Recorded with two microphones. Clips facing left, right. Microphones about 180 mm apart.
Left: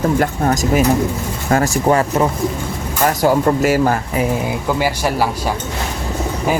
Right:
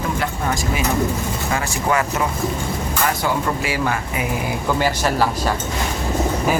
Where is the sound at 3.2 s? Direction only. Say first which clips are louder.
Left 8 dB; 40° left (ahead or behind).